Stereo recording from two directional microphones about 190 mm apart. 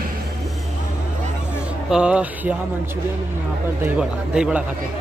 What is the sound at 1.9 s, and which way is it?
Speech, 5° right (ahead or behind).